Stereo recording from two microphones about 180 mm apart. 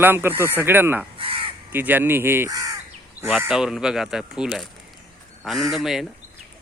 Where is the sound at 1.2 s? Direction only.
30° right (ahead or behind).